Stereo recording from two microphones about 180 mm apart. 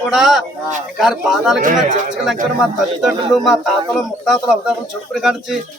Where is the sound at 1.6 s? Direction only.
50° right (ahead or behind).